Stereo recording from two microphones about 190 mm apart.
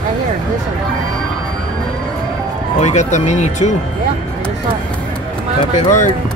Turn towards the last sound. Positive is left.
turn(degrees=40)  # may be behind; listen again after turning